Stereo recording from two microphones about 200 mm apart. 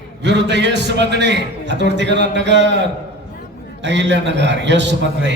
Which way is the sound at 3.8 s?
60° right (ahead or behind).